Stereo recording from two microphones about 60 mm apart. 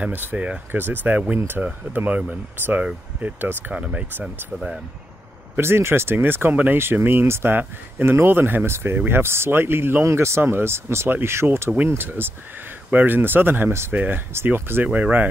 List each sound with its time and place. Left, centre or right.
0.1 s speech: right
5.6 s speech: right
10.0 s speech: right